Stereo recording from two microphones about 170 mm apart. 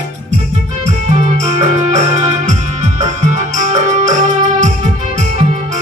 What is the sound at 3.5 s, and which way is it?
Music, 45° right (ahead or behind).